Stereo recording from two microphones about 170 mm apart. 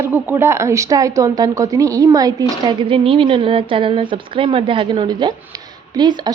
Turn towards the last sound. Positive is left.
turn(degrees=-25)  # may be behind; listen again after turning